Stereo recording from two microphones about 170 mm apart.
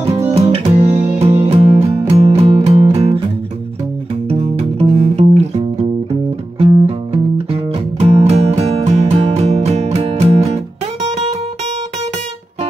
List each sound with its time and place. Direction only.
0.3 s music: 40° right (ahead or behind)
4.3 s music: 40° right (ahead or behind)